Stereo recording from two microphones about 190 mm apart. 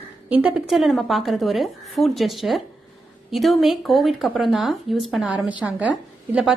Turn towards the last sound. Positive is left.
turn(degrees=-5)  # may be behind; listen again after turning